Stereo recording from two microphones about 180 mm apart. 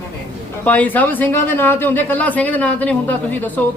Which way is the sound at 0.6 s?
10° left (ahead or behind).